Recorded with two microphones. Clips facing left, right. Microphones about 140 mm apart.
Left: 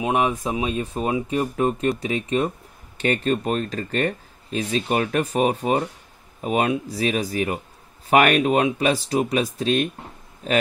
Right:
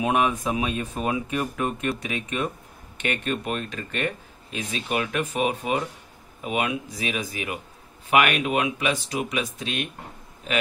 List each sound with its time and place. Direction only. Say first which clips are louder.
0.0 s speech: left 1 dB; 25° left (ahead or behind)